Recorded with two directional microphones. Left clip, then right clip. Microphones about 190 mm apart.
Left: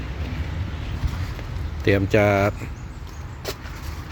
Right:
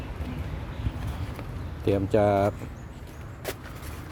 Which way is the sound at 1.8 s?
Centre (ahead or behind).